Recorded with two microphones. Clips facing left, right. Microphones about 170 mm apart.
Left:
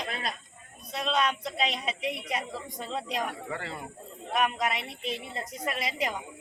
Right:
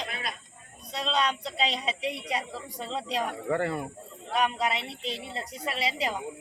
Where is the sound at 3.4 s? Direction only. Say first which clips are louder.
Right 9 dB; 50° right (ahead or behind).